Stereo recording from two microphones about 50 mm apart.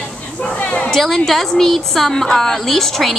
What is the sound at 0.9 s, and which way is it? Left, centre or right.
A woman's voice, centre.